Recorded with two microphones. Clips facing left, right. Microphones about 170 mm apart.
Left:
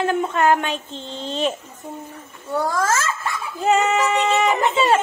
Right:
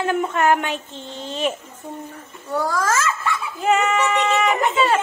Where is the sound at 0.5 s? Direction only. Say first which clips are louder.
Even; 15° right (ahead or behind).